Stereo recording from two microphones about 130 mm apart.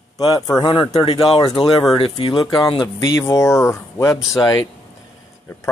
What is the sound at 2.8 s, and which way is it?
Speech, 25° left (ahead or behind).